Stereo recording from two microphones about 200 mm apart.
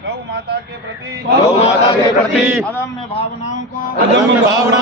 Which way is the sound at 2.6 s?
15° left (ahead or behind).